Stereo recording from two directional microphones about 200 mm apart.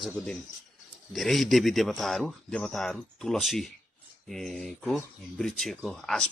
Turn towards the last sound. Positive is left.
turn(degrees=0)  # may be behind; listen again after turning